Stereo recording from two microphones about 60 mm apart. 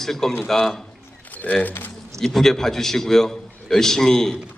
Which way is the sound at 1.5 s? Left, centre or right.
Left.